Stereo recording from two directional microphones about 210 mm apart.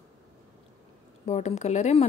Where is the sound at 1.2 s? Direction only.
35° left (ahead or behind).